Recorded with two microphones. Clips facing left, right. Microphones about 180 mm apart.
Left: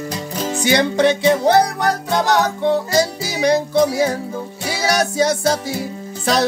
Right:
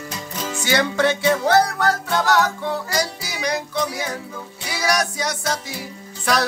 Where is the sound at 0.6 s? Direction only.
20° left (ahead or behind).